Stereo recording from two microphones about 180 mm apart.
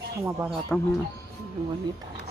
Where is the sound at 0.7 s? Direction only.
5° left (ahead or behind).